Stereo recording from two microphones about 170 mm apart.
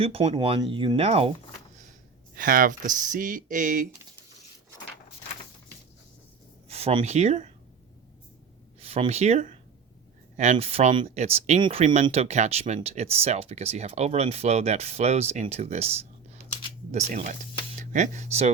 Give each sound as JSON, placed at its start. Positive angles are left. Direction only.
{"t": 0.0, "sound": "speech", "side_deg": -35}
{"t": 2.3, "sound": "speech", "side_deg": -55}
{"t": 6.7, "sound": "speech", "side_deg": -35}
{"t": 8.8, "sound": "speech", "side_deg": -35}
{"t": 11.6, "sound": "speech", "side_deg": -30}